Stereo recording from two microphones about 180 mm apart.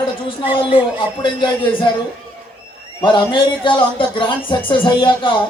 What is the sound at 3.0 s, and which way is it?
A man's voice, 25° left (ahead or behind).